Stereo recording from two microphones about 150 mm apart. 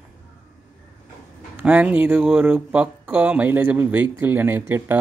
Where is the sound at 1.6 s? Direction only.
10° right (ahead or behind).